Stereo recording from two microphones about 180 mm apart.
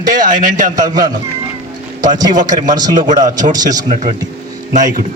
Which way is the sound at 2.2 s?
20° right (ahead or behind).